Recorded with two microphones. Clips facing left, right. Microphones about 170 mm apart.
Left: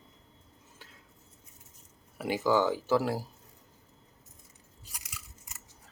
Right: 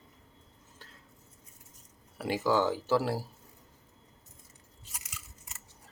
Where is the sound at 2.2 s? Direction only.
Centre (ahead or behind).